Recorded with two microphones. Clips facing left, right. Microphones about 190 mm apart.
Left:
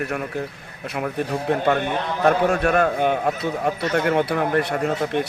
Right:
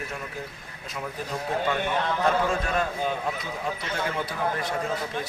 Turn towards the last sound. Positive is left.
turn(degrees=65)  # may be behind; listen again after turning